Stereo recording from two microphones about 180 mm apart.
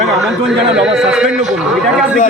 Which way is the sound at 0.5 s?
Centre (ahead or behind).